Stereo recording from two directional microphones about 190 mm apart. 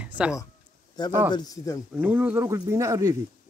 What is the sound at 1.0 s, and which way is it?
Speech, 20° left (ahead or behind).